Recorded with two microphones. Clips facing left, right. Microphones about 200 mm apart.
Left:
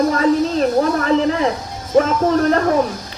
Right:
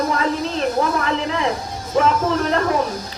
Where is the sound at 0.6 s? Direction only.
40° left (ahead or behind).